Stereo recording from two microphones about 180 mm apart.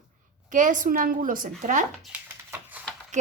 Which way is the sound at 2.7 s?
10° right (ahead or behind).